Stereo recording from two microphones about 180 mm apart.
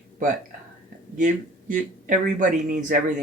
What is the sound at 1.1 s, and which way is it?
Speech, 45° right (ahead or behind).